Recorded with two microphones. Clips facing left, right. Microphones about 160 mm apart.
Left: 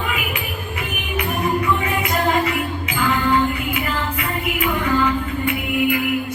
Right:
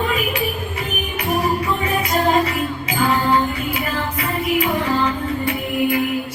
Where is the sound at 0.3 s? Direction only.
35° right (ahead or behind).